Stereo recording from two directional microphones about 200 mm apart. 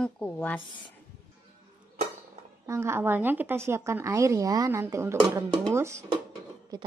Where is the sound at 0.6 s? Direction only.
25° left (ahead or behind).